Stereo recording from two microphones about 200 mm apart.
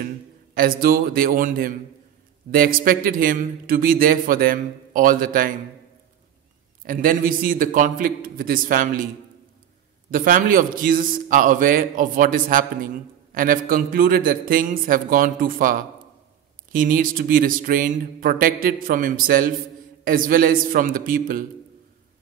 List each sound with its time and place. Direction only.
0.6 s a man's voice: 45° right (ahead or behind)
6.8 s a man's voice: 45° right (ahead or behind)
10.1 s a man's voice: 45° right (ahead or behind)